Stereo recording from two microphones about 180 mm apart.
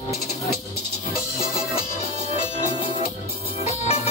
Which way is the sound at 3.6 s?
35° left (ahead or behind).